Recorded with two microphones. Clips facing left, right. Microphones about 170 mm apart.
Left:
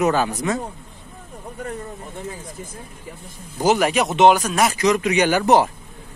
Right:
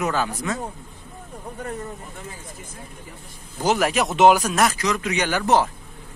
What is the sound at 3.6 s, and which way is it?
Speech, 5° left (ahead or behind).